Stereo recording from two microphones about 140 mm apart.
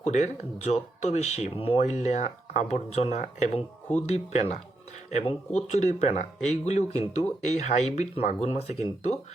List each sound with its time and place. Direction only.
0.0 s speech: 55° left (ahead or behind)